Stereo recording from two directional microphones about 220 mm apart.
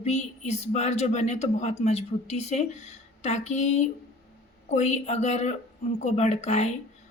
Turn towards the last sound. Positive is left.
turn(degrees=30)  # may be behind; listen again after turning